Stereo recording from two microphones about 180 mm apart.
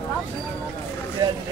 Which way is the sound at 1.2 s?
20° right (ahead or behind).